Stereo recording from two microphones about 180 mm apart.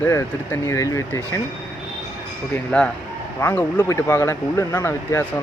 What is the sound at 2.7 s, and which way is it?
Speech, 5° left (ahead or behind).